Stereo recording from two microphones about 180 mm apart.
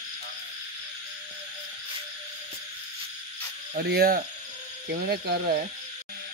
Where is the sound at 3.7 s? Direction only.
60° right (ahead or behind).